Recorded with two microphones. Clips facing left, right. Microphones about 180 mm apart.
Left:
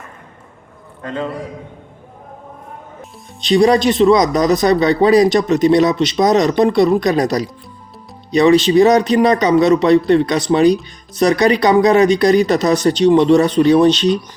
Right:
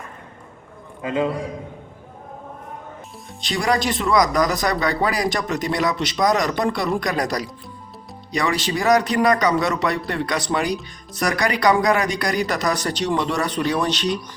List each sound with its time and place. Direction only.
1.0 s a man's voice: 10° right (ahead or behind)
3.4 s speech: 20° left (ahead or behind)